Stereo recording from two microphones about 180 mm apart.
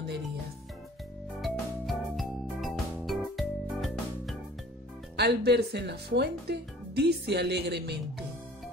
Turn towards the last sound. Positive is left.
turn(degrees=-65)  # may be behind; listen again after turning